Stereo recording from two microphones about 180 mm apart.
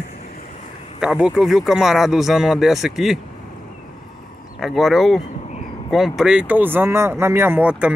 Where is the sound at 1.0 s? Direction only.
5° right (ahead or behind).